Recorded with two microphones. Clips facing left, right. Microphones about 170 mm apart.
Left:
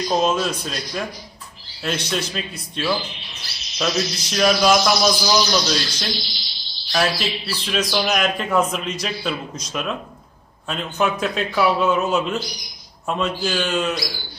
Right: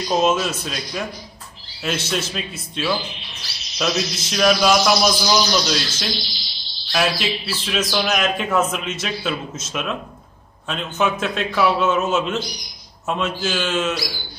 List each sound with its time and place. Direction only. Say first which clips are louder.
0.1 s a man's voice: right 2 dB; 5° right (ahead or behind)